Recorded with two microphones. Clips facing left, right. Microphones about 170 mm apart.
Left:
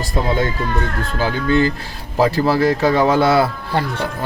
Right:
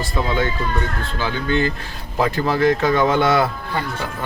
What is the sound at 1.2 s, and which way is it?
Speech, 35° left (ahead or behind).